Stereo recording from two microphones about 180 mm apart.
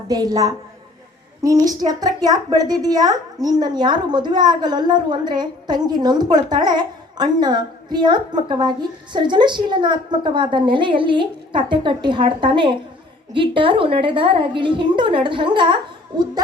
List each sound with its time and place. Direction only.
0.1 s a woman's voice: 20° right (ahead or behind)